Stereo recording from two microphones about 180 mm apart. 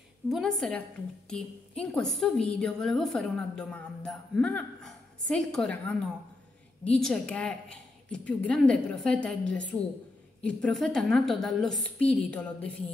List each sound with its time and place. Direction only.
0.3 s a woman's voice: centre (ahead or behind)
10.4 s a woman's voice: centre (ahead or behind)